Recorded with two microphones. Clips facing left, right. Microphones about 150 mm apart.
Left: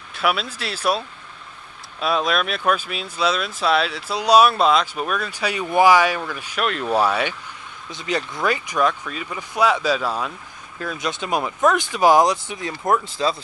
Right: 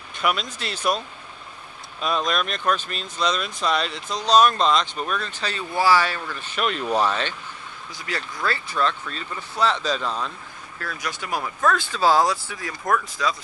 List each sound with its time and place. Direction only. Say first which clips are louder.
0.1 s speech: left 2 dB; 5° left (ahead or behind)
7.9 s speech: left 7 dB; 20° left (ahead or behind)
10.8 s speech: left 5 dB; 20° left (ahead or behind)